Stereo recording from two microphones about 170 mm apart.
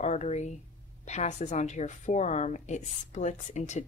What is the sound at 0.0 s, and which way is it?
Speech, 40° left (ahead or behind).